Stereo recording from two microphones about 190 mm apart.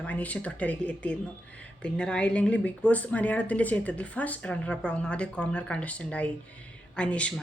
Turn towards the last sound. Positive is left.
turn(degrees=5)  # may be behind; listen again after turning